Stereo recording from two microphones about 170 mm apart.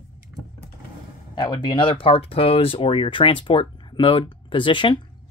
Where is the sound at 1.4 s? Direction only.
25° left (ahead or behind).